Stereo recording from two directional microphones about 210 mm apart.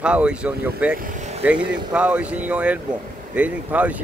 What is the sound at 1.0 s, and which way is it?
Vehicle, 35° right (ahead or behind).